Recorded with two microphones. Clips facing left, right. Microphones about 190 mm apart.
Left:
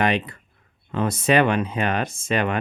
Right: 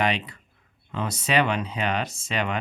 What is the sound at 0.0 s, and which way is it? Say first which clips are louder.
Speech: left 4 dB; 50° left (ahead or behind).